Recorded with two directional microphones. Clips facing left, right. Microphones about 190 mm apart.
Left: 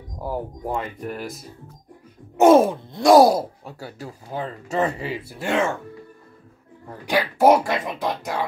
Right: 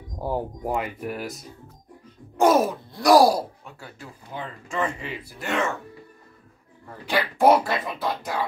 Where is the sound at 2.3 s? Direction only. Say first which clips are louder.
Left 5 dB; 25° left (ahead or behind).